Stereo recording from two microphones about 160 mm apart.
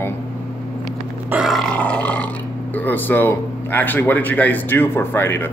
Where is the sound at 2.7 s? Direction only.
10° left (ahead or behind).